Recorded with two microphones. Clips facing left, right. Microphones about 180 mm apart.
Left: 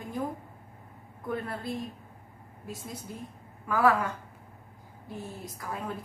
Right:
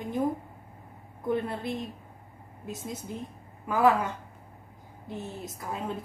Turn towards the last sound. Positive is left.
turn(degrees=-20)  # may be behind; listen again after turning